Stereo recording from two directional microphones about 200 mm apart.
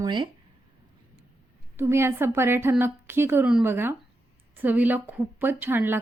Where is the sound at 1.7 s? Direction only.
15° right (ahead or behind).